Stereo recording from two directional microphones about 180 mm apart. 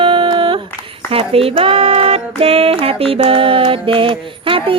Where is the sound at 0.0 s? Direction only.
30° right (ahead or behind).